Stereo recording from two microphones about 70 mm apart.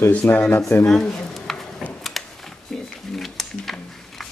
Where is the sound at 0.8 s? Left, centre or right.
Centre.